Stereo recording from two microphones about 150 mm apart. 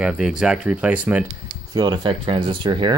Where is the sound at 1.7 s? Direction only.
30° right (ahead or behind).